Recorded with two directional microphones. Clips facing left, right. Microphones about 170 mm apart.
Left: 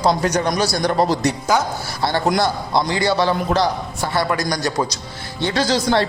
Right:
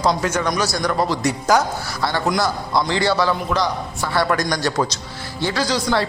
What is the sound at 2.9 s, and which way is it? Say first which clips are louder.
A man's voice: even; 15° left (ahead or behind).